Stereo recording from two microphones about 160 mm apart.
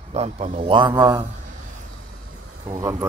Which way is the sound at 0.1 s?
45° right (ahead or behind).